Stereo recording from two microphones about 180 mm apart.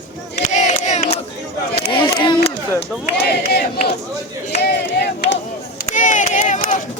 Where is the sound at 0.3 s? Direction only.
40° left (ahead or behind).